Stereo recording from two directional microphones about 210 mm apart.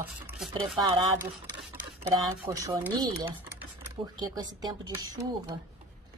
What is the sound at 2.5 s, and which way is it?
Speech, 15° right (ahead or behind).